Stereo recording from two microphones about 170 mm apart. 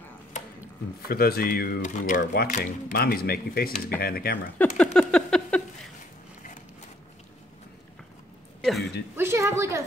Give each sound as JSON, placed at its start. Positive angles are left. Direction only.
{"t": 1.0, "sound": "speech", "side_deg": 65}
{"t": 2.0, "sound": "speech", "side_deg": 50}
{"t": 4.6, "sound": "speech", "side_deg": 5}
{"t": 5.1, "sound": "a sound", "side_deg": 5}
{"t": 8.5, "sound": "a sound", "side_deg": 0}
{"t": 9.1, "sound": "a woman's voice", "side_deg": -15}